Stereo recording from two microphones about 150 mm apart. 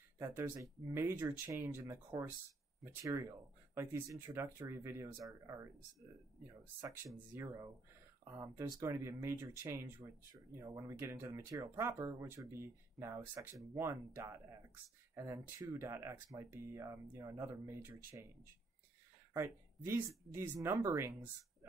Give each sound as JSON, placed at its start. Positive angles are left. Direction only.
{"t": 0.2, "sound": "speech", "side_deg": -20}
{"t": 19.3, "sound": "speech", "side_deg": -15}